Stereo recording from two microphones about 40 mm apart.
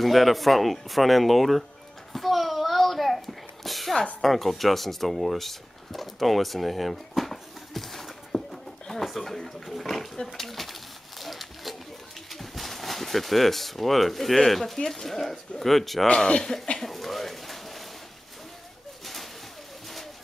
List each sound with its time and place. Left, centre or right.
0.0 s speech: centre
2.1 s a sound: centre
9.7 s pig: centre
10.2 s pigeon: centre
12.3 s speech: centre
16.3 s speech: centre
16.7 s a sound: centre